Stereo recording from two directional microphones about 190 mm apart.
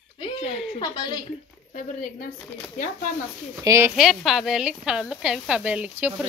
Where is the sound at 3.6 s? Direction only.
15° right (ahead or behind).